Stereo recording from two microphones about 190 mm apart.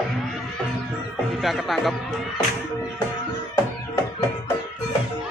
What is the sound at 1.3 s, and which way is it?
Music, centre (ahead or behind).